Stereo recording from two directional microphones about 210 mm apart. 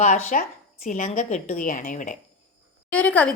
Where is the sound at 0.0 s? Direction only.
40° left (ahead or behind).